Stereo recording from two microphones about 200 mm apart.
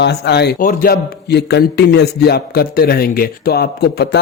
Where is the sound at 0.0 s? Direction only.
55° left (ahead or behind).